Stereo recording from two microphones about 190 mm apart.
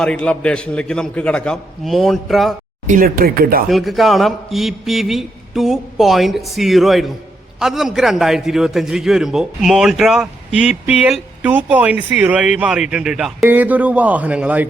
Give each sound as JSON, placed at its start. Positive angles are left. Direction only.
{"t": 0.0, "sound": "a man's voice", "side_deg": 5}
{"t": 2.8, "sound": "speech", "side_deg": -45}
{"t": 3.7, "sound": "a man's voice", "side_deg": 0}